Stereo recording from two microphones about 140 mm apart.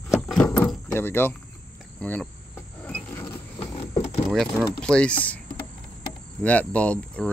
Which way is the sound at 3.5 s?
45° left (ahead or behind).